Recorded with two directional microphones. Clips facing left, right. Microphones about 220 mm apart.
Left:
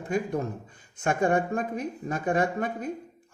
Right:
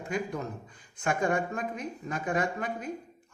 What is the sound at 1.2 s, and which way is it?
A man's voice, 30° left (ahead or behind).